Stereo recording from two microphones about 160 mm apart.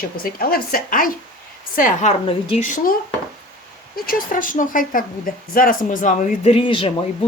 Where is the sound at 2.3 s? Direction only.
35° left (ahead or behind).